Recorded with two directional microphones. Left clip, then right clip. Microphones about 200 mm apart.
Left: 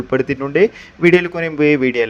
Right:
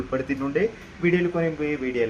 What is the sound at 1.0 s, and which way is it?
A man's voice, 45° left (ahead or behind).